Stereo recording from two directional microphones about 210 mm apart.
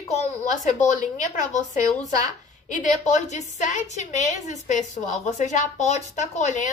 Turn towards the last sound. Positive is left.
turn(degrees=35)  # may be behind; listen again after turning